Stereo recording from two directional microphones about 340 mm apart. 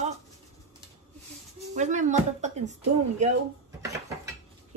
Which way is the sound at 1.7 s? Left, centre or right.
Right.